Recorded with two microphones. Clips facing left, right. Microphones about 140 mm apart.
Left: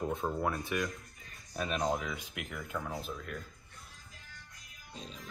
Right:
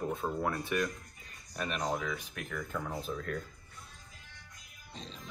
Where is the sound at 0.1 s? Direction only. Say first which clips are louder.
Even; 15° left (ahead or behind).